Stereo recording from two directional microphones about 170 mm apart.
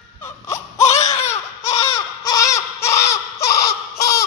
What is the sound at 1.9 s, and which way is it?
Baby cry, 20° left (ahead or behind).